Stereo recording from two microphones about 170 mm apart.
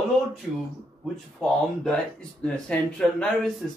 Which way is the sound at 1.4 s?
5° left (ahead or behind).